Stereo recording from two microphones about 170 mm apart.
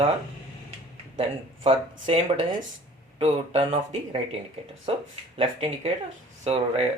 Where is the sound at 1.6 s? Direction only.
40° right (ahead or behind).